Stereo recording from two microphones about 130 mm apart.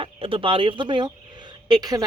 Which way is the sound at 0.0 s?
45° right (ahead or behind).